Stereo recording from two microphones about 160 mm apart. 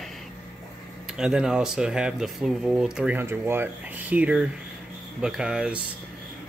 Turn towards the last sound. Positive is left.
turn(degrees=-5)  # may be behind; listen again after turning